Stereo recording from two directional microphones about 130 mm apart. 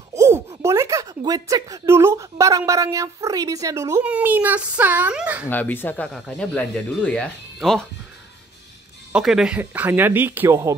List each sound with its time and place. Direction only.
0.1 s speech: 25° right (ahead or behind)
4.0 s a woman's voice: 10° right (ahead or behind)
5.5 s speech: 15° left (ahead or behind)
9.1 s speech: 5° right (ahead or behind)
9.6 s a woman's voice: 15° right (ahead or behind)